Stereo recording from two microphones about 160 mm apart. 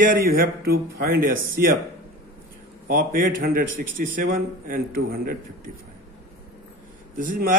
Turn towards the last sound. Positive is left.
turn(degrees=-60)  # may be behind; listen again after turning